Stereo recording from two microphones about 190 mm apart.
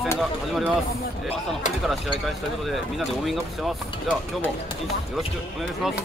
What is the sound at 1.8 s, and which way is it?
Speech, centre (ahead or behind).